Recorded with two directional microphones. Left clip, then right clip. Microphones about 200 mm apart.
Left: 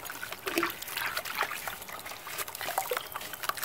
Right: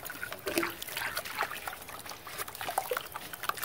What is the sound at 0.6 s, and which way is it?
Water, 35° right (ahead or behind).